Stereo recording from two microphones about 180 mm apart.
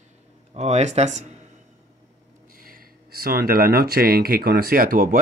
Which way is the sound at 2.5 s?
50° right (ahead or behind).